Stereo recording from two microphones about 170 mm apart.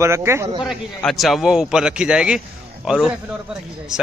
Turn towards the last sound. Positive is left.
turn(degrees=-5)  # may be behind; listen again after turning